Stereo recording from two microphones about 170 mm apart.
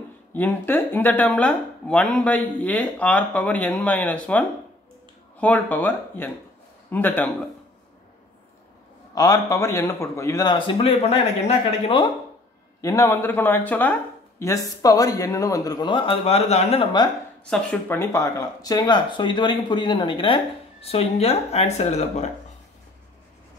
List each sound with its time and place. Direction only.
0.3 s speech: 10° left (ahead or behind)
9.1 s a man's voice: 20° left (ahead or behind)
12.8 s a man's voice: 15° left (ahead or behind)
17.5 s a man's voice: 10° left (ahead or behind); by 22.3 s 40° left (ahead or behind)